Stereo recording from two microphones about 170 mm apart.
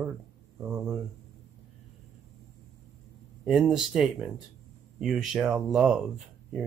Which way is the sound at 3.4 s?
5° right (ahead or behind).